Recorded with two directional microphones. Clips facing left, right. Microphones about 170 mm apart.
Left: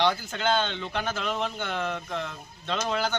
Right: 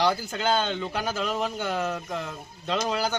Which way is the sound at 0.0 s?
10° right (ahead or behind).